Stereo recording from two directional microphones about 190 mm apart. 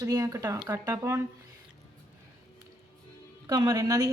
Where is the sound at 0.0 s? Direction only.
20° right (ahead or behind).